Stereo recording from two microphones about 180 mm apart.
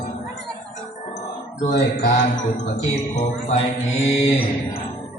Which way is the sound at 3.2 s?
35° left (ahead or behind).